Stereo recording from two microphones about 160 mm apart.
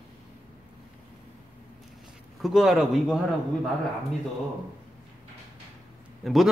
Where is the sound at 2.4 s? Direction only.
Centre (ahead or behind).